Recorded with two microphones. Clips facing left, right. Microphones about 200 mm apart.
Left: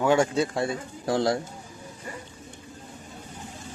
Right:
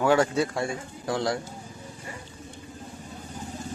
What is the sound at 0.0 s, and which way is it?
Speech, 20° left (ahead or behind).